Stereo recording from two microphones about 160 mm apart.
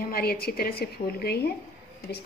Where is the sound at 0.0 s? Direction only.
70° left (ahead or behind).